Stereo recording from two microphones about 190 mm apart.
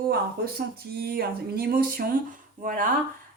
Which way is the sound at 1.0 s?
55° right (ahead or behind).